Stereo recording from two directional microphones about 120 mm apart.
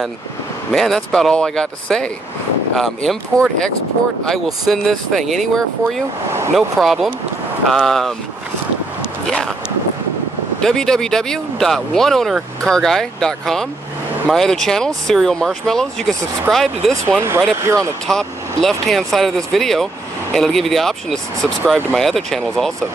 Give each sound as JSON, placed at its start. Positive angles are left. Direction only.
{"t": 0.7, "sound": "speech", "side_deg": 0}
{"t": 10.6, "sound": "speech", "side_deg": 5}
{"t": 17.2, "sound": "speech", "side_deg": -20}
{"t": 18.0, "sound": "speech", "side_deg": 5}